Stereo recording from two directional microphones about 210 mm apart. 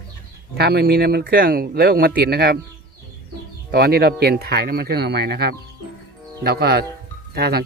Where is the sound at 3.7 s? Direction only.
50° right (ahead or behind).